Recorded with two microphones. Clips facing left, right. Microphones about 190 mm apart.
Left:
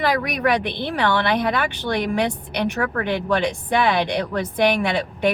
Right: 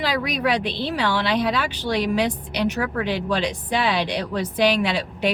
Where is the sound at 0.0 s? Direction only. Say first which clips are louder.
Left 2 dB; 55° left (ahead or behind).